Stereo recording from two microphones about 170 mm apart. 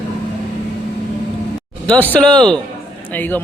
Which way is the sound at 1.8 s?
10° left (ahead or behind).